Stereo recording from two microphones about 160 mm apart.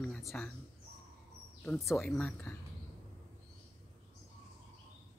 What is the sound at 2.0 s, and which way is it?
Speech, 5° left (ahead or behind).